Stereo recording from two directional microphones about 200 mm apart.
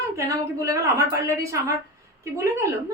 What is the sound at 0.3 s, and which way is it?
A woman's voice, 15° right (ahead or behind).